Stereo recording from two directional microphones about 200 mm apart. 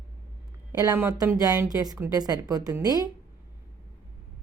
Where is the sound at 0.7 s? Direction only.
15° right (ahead or behind).